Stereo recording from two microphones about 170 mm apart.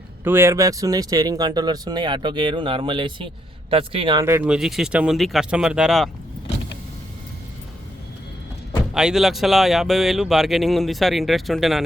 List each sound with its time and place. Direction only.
0.3 s a man's voice: 15° right (ahead or behind); by 4.2 s 30° right (ahead or behind)
4.2 s speech: 15° right (ahead or behind)
9.0 s speech: 5° right (ahead or behind)